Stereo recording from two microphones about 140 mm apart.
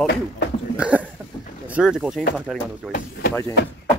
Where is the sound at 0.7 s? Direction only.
10° right (ahead or behind).